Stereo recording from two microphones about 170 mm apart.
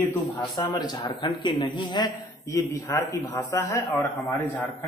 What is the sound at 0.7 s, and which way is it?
A man's voice, 25° left (ahead or behind).